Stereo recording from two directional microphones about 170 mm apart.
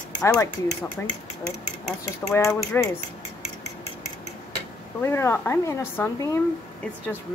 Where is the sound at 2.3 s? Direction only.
15° left (ahead or behind).